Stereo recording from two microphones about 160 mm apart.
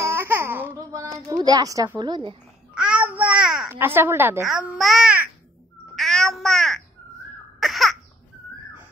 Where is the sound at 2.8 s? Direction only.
5° right (ahead or behind).